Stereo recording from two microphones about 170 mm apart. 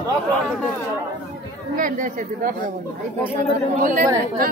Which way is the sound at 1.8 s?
50° right (ahead or behind).